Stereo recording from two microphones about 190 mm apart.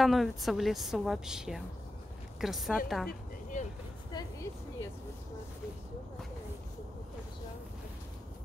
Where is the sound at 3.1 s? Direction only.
45° left (ahead or behind).